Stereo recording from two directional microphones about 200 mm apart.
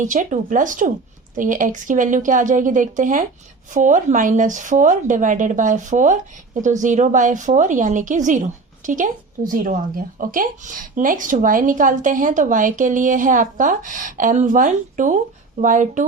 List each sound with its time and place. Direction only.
0.0 s a woman's voice: 40° right (ahead or behind)